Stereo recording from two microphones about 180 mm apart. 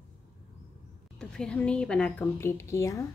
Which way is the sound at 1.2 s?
5° left (ahead or behind).